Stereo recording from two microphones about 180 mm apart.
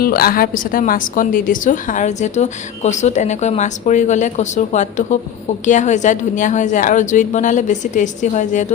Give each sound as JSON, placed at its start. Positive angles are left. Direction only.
{"t": 0.0, "sound": "a woman's voice", "side_deg": 55}